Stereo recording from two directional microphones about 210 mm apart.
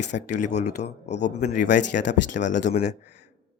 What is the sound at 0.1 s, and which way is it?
Speech, 35° left (ahead or behind).